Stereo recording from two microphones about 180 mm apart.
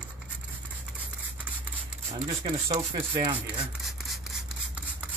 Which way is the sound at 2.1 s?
35° right (ahead or behind).